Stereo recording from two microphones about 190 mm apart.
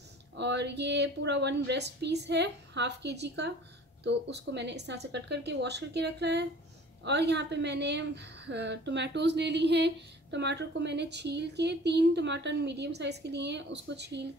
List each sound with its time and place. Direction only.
0.4 s a woman's voice: 65° right (ahead or behind)